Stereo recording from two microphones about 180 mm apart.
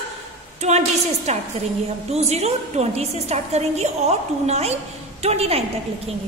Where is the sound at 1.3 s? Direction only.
35° right (ahead or behind).